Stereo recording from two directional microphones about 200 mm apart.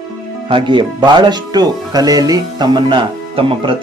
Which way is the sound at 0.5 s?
25° right (ahead or behind).